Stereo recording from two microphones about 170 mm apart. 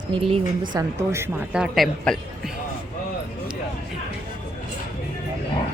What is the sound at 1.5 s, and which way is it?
Speech, 5° right (ahead or behind).